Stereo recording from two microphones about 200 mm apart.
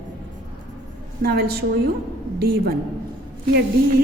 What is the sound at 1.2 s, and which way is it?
A woman's voice, 50° right (ahead or behind).